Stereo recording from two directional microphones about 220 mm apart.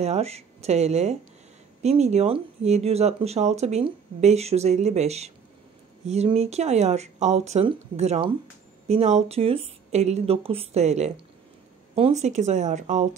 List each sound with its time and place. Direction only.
0.0 s speech: 30° right (ahead or behind)